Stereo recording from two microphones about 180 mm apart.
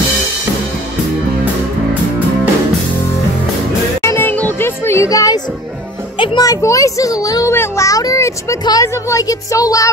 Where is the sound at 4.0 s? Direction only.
15° left (ahead or behind).